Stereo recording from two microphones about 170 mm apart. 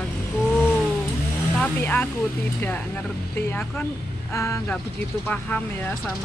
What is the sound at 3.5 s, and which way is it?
Speech, 10° left (ahead or behind).